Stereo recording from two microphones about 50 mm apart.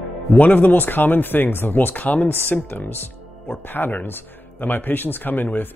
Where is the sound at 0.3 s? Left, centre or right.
Left.